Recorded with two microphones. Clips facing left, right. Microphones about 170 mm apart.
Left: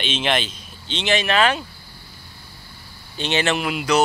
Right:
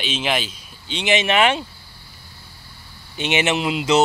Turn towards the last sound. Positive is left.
turn(degrees=-20)  # may be behind; listen again after turning